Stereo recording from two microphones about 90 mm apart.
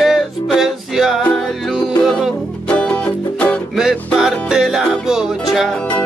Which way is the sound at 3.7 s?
Centre (ahead or behind).